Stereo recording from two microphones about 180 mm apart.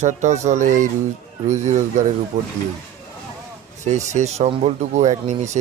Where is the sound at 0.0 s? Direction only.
40° right (ahead or behind).